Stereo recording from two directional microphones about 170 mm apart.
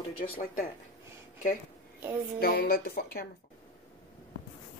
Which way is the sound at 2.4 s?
60° left (ahead or behind).